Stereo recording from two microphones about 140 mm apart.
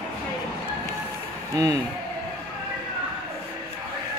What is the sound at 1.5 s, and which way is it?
Speech, 25° right (ahead or behind).